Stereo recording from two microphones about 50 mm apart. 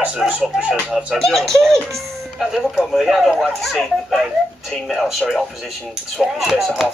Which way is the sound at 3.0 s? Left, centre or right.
Centre.